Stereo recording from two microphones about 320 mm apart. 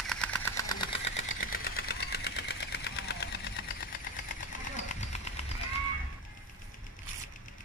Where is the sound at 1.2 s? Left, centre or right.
Left.